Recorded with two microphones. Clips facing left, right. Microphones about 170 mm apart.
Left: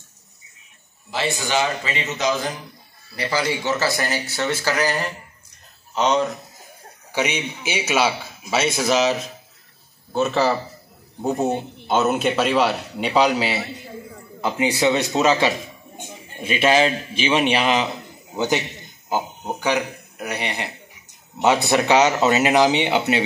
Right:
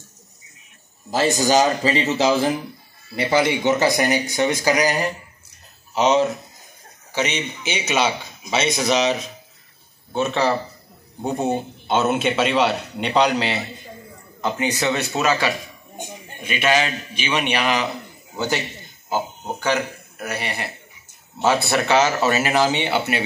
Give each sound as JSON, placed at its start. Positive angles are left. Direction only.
{"t": 1.1, "sound": "a man's voice", "side_deg": -40}
{"t": 7.1, "sound": "a man's voice", "side_deg": 10}